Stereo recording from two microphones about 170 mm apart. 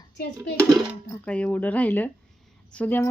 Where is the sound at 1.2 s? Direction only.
10° left (ahead or behind).